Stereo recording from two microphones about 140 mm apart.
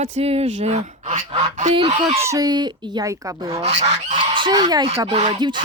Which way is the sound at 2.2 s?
25° right (ahead or behind).